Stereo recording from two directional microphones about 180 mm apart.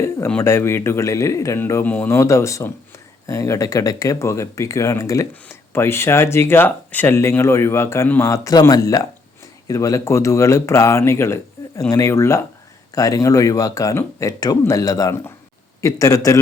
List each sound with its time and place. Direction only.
0.3 s speech: 10° left (ahead or behind)